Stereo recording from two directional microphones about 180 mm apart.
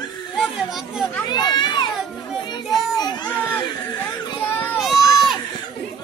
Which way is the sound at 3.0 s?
25° left (ahead or behind).